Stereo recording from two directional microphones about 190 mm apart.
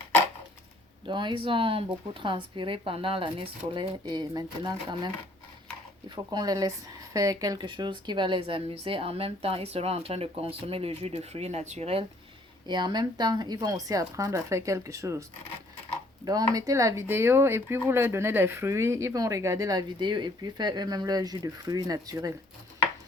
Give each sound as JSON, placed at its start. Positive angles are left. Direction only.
{"t": 1.0, "sound": "speech", "side_deg": -25}
{"t": 6.3, "sound": "speech", "side_deg": -20}
{"t": 16.2, "sound": "speech", "side_deg": -20}